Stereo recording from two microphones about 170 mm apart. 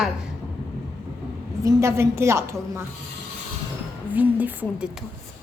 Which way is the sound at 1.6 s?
15° right (ahead or behind).